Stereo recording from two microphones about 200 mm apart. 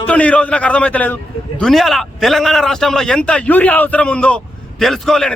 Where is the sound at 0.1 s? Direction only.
5° left (ahead or behind).